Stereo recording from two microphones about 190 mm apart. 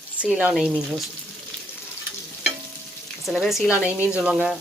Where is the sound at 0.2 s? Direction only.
5° right (ahead or behind).